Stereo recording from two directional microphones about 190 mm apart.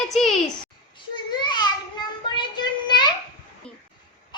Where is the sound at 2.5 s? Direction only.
25° left (ahead or behind).